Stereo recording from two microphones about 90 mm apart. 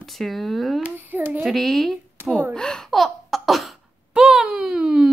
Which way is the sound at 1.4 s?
5° left (ahead or behind).